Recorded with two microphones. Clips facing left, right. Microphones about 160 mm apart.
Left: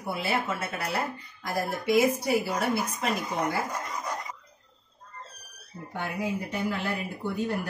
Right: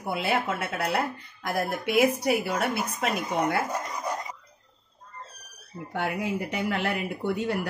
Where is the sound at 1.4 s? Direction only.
65° right (ahead or behind).